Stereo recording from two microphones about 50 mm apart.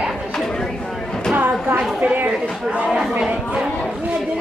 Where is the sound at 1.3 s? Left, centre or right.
Right.